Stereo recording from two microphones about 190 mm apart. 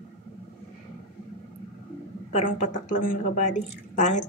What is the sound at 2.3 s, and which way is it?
Speech, 40° left (ahead or behind).